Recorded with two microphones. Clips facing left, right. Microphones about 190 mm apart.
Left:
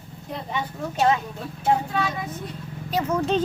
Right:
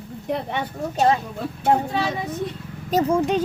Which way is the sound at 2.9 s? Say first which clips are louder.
Right 5 dB; 35° right (ahead or behind).